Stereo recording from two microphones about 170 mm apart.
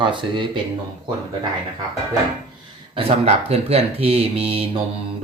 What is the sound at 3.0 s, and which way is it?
Speech, 35° right (ahead or behind).